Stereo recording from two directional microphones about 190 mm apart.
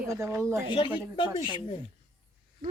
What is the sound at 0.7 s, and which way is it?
Speech, 25° left (ahead or behind).